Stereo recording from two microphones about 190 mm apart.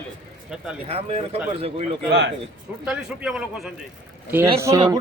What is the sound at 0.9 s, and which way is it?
Speech, 30° right (ahead or behind).